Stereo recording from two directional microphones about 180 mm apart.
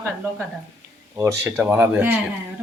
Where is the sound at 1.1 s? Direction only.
15° right (ahead or behind).